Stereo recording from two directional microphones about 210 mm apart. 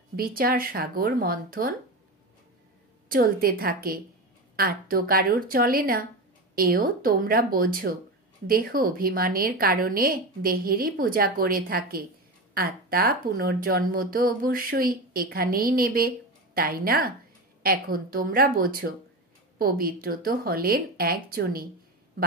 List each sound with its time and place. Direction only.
0.1 s a woman's voice: 45° right (ahead or behind)
3.1 s a woman's voice: 45° right (ahead or behind)